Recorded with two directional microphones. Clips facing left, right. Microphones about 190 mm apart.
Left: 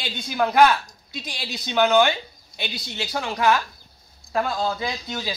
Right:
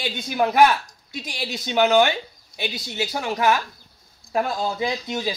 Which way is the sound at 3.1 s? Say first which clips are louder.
Even; 15° right (ahead or behind).